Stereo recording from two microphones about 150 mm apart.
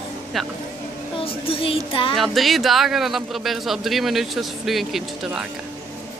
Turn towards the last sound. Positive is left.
turn(degrees=-5)  # may be behind; listen again after turning